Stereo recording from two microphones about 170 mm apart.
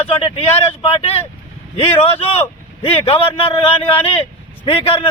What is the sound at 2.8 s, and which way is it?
A man's voice, 35° left (ahead or behind).